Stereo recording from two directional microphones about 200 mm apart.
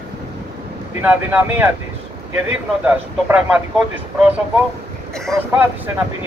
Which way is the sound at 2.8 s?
5° right (ahead or behind).